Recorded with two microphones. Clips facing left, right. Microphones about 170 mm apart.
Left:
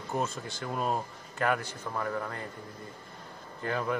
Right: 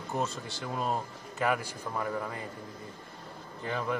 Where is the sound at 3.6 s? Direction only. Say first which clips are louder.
Left 2 dB; centre (ahead or behind).